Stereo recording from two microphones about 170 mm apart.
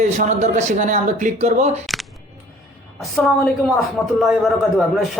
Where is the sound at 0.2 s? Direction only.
45° right (ahead or behind).